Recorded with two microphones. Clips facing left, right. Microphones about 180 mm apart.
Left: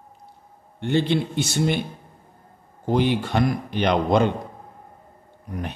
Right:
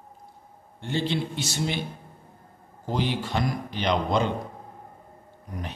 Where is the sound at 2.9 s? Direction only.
60° left (ahead or behind).